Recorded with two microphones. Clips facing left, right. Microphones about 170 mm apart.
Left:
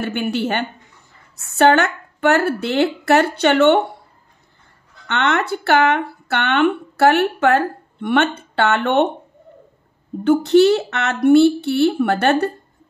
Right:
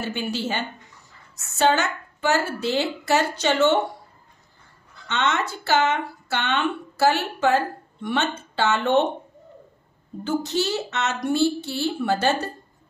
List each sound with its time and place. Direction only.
0.0 s speech: 60° left (ahead or behind)
5.0 s speech: 60° left (ahead or behind)
10.2 s speech: 60° left (ahead or behind)